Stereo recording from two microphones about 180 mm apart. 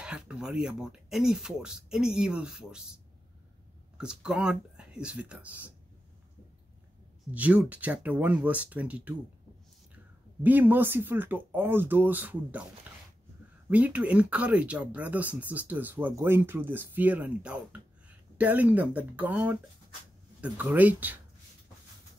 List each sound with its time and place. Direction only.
0.0 s speech: 5° right (ahead or behind)
4.0 s speech: 5° right (ahead or behind)
7.2 s speech: 10° right (ahead or behind)
10.4 s speech: 10° right (ahead or behind)
13.7 s speech: 10° right (ahead or behind)